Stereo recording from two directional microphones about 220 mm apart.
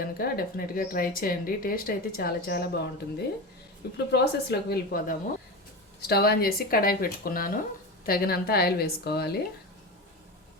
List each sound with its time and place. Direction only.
0.0 s speech: 45° left (ahead or behind)
3.9 s a woman's voice: 50° left (ahead or behind)